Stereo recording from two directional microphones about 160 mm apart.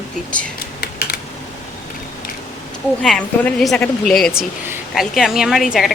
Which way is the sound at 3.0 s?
5° left (ahead or behind).